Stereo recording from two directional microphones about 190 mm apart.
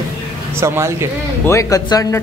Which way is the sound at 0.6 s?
15° right (ahead or behind).